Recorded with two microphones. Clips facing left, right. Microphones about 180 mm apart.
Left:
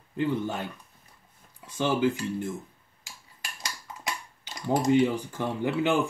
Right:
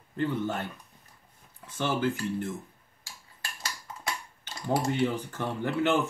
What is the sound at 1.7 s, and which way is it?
Speech, 15° left (ahead or behind).